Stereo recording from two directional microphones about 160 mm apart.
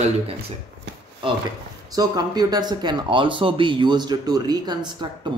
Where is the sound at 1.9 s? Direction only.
25° right (ahead or behind).